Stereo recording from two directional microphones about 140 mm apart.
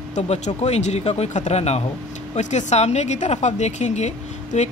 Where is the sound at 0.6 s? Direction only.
50° left (ahead or behind).